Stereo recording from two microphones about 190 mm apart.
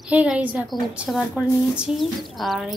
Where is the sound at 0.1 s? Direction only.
5° right (ahead or behind).